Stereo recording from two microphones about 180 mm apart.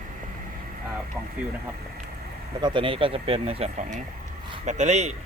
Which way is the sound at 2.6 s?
25° right (ahead or behind).